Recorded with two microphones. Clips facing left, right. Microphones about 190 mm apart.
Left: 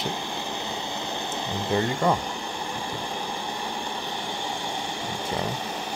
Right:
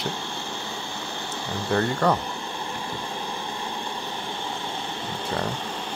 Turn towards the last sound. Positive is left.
turn(degrees=10)  # may be behind; listen again after turning